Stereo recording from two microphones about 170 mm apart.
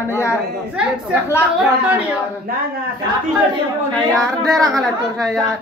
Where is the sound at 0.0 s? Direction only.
15° left (ahead or behind).